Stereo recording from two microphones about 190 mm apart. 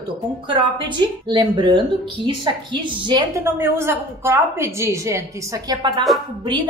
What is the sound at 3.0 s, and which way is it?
A woman's voice, 20° right (ahead or behind).